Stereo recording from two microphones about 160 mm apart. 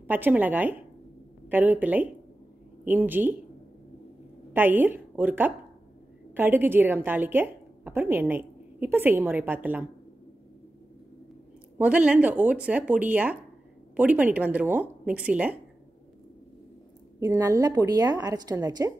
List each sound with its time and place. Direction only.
0.0 s a woman's voice: 10° right (ahead or behind)
4.6 s a woman's voice: 10° right (ahead or behind)
11.8 s a woman's voice: 5° right (ahead or behind)
17.2 s a woman's voice: 20° right (ahead or behind)